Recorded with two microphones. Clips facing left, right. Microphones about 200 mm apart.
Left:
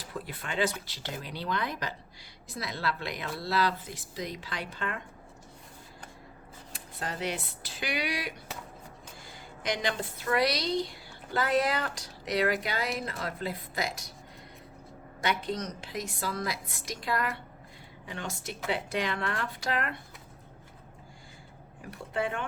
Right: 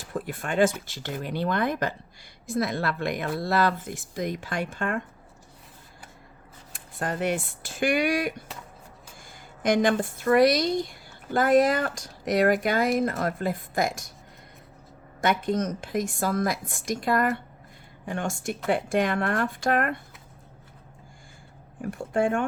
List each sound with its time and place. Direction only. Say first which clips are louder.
0.0 s speech: right 7 dB; 50° right (ahead or behind)
6.7 s speech: right 7 dB; 50° right (ahead or behind)
9.6 s speech: right 10 dB; 50° right (ahead or behind)
15.2 s speech: right 7 dB; 50° right (ahead or behind)
21.8 s speech: right 7 dB; 50° right (ahead or behind)